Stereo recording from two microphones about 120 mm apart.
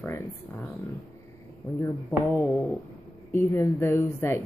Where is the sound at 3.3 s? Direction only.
25° left (ahead or behind).